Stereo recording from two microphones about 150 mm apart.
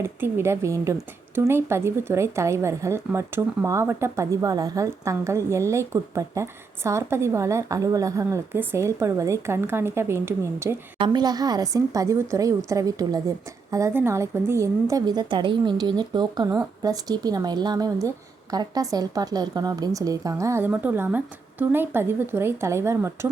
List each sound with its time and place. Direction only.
0.0 s speech: 15° right (ahead or behind)
10.9 s speech: 30° right (ahead or behind)